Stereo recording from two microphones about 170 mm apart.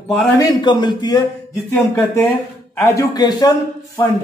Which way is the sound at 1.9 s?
15° left (ahead or behind).